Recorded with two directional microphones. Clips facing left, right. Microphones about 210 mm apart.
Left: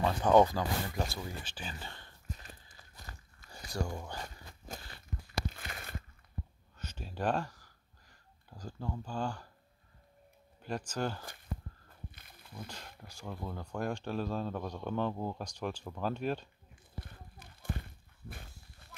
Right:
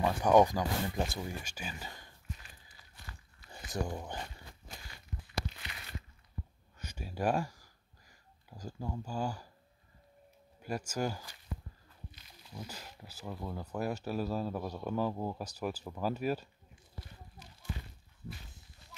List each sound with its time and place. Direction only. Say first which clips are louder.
0.0 s speech: even; 15° right (ahead or behind)
2.2 s walk: left 3 dB; 40° left (ahead or behind)
3.4 s speech: right 1 dB; 20° right (ahead or behind)
4.6 s crunch: left 7 dB; 45° left (ahead or behind)
5.5 s a sound: left 3 dB; 50° left (ahead or behind)
6.8 s a sound: right 1 dB; 10° right (ahead or behind)
10.6 s speech: right 1 dB; 10° right (ahead or behind)
12.1 s a sound: even; 55° left (ahead or behind)
12.5 s speech: right 1 dB; 5° right (ahead or behind)
17.0 s horse: even; 55° left (ahead or behind)